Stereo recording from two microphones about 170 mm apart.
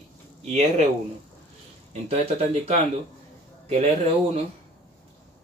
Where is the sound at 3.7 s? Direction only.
40° right (ahead or behind).